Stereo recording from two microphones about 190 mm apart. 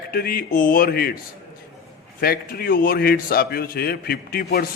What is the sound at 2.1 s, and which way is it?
A man's voice, 50° left (ahead or behind).